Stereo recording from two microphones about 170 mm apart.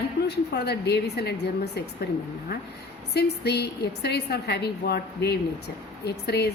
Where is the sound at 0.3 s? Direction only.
75° left (ahead or behind).